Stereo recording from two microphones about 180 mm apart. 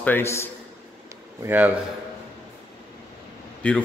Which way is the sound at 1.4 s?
10° right (ahead or behind).